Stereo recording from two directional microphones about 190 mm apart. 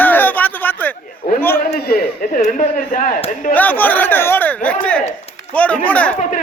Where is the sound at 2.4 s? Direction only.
40° left (ahead or behind).